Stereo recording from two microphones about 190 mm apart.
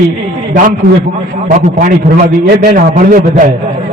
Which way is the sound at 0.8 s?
50° right (ahead or behind).